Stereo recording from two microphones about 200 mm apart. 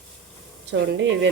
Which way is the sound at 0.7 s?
60° right (ahead or behind).